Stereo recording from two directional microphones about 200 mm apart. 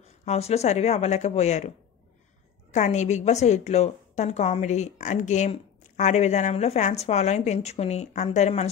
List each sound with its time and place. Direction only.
0.2 s a woman's voice: 35° left (ahead or behind)
2.7 s a woman's voice: 35° left (ahead or behind)